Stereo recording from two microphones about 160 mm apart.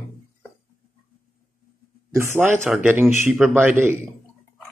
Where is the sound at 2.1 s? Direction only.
15° right (ahead or behind).